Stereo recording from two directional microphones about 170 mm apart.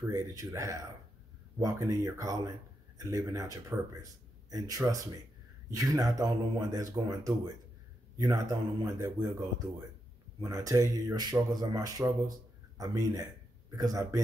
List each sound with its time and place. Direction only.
0.1 s a man's voice: 20° right (ahead or behind)